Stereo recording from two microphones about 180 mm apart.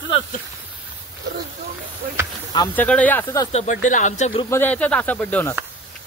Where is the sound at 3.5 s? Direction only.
45° left (ahead or behind).